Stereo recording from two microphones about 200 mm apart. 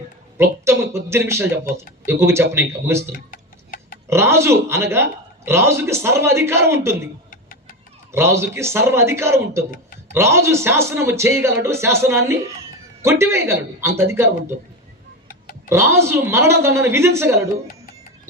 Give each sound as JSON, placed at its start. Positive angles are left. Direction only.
{"t": 0.3, "sound": "speech", "side_deg": -15}
{"t": 3.3, "sound": "tick-tock", "side_deg": 45}
{"t": 4.1, "sound": "speech", "side_deg": -15}
{"t": 8.1, "sound": "speech", "side_deg": -10}
{"t": 15.7, "sound": "speech", "side_deg": -15}